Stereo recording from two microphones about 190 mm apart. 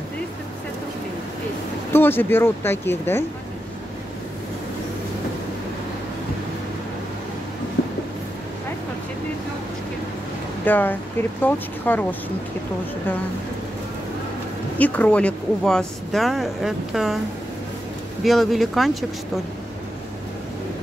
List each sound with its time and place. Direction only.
1.9 s speech: 10° left (ahead or behind)
7.8 s a sound: 60° left (ahead or behind)
10.6 s speech: 10° left (ahead or behind)
14.8 s speech: 10° left (ahead or behind)
18.2 s speech: centre (ahead or behind)